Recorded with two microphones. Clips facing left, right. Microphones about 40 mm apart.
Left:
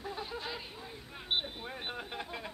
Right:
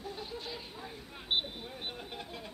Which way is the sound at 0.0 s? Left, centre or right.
Centre.